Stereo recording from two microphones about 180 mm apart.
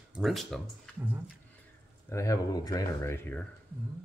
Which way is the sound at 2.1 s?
20° left (ahead or behind).